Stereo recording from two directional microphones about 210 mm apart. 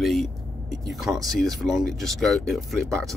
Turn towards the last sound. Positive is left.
turn(degrees=0)  # may be behind; listen again after turning